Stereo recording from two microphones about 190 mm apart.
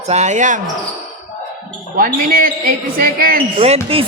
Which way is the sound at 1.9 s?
50° right (ahead or behind).